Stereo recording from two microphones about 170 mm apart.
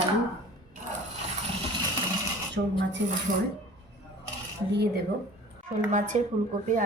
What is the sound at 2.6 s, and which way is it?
Speech, 60° right (ahead or behind).